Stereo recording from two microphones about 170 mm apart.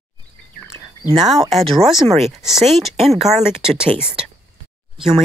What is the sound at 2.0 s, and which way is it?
Speech, 40° right (ahead or behind).